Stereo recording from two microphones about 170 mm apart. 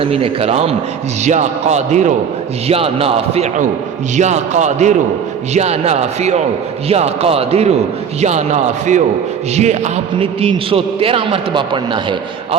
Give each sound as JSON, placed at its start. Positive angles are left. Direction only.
{"t": 0.0, "sound": "a man's voice", "side_deg": -35}